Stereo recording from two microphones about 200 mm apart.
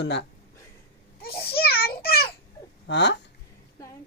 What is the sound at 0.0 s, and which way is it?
Speech, 60° left (ahead or behind).